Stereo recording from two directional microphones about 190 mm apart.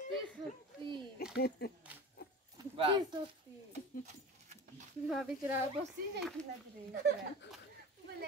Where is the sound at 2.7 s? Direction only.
25° right (ahead or behind).